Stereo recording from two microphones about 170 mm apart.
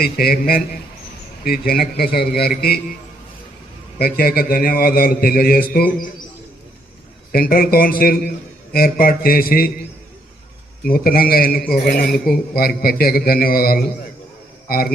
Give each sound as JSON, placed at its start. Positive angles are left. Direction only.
{"t": 0.0, "sound": "a man's voice", "side_deg": 65}
{"t": 1.8, "sound": "a man's voice", "side_deg": 65}
{"t": 3.9, "sound": "a man's voice", "side_deg": 65}
{"t": 7.3, "sound": "a man's voice", "side_deg": 60}
{"t": 10.8, "sound": "a man's voice", "side_deg": 60}
{"t": 12.0, "sound": "a man's voice", "side_deg": 0}
{"t": 12.3, "sound": "a man's voice", "side_deg": 60}